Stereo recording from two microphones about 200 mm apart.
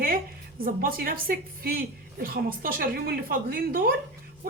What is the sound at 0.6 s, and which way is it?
A woman's voice, 45° right (ahead or behind).